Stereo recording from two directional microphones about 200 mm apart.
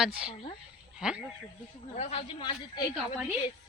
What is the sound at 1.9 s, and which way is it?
Speech, 30° left (ahead or behind).